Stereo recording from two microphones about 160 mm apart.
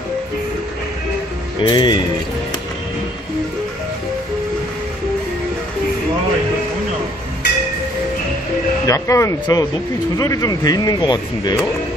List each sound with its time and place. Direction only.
1.6 s speech: 25° left (ahead or behind)
8.8 s speech: 20° left (ahead or behind)